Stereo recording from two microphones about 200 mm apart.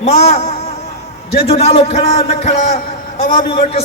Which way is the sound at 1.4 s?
30° left (ahead or behind).